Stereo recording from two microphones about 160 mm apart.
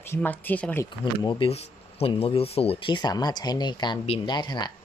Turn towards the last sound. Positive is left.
turn(degrees=25)  # may be behind; listen again after turning